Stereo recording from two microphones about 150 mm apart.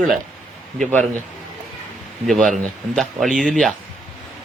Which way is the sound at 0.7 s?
5° left (ahead or behind).